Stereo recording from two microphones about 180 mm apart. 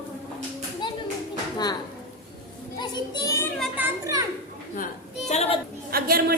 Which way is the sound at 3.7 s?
15° right (ahead or behind).